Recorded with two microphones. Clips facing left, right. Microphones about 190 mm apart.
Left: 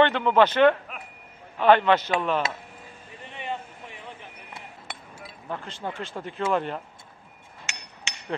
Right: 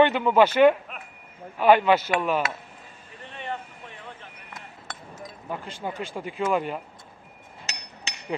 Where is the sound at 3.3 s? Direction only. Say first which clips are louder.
Left 1 dB; 15° left (ahead or behind).